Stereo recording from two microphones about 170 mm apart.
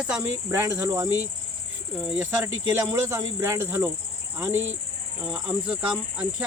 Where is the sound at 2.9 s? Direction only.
15° right (ahead or behind).